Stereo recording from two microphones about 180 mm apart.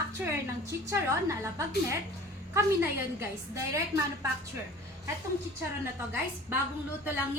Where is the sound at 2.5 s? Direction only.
15° right (ahead or behind).